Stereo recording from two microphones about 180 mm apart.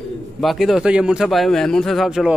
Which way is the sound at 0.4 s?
Centre (ahead or behind).